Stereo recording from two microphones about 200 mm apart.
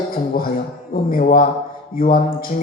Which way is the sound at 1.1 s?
45° left (ahead or behind).